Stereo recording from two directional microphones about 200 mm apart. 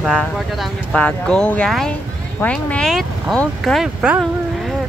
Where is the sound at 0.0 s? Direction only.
Centre (ahead or behind).